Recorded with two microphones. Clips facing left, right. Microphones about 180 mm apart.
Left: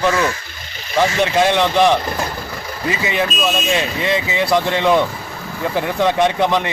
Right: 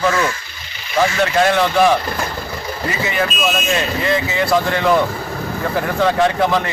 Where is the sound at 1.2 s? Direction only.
20° left (ahead or behind).